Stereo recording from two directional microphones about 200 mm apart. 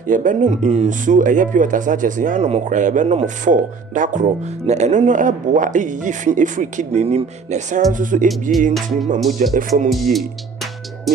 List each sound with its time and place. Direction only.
0.0 s speech: 40° right (ahead or behind)
8.3 s music: centre (ahead or behind)
9.4 s speech: 45° right (ahead or behind)
9.8 s music: centre (ahead or behind)